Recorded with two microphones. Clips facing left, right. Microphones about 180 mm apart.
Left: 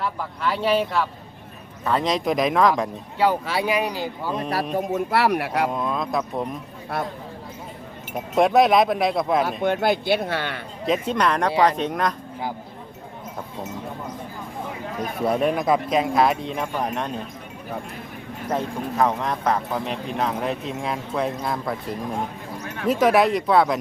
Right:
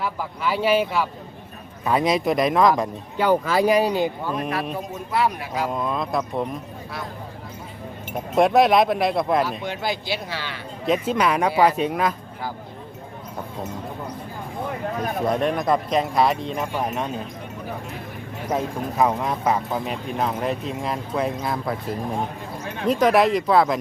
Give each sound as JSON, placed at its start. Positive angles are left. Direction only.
{"t": 0.0, "sound": "speech", "side_deg": -5}
{"t": 3.2, "sound": "speech", "side_deg": -45}
{"t": 4.4, "sound": "a man's voice", "side_deg": 35}
{"t": 4.9, "sound": "speech", "side_deg": 70}
{"t": 5.7, "sound": "speech", "side_deg": 0}
{"t": 6.9, "sound": "speech", "side_deg": 55}
{"t": 8.1, "sound": "speech", "side_deg": 0}
{"t": 9.5, "sound": "speech", "side_deg": 55}
{"t": 10.8, "sound": "speech", "side_deg": 0}
{"t": 15.2, "sound": "speech", "side_deg": 5}
{"t": 18.5, "sound": "speech", "side_deg": -5}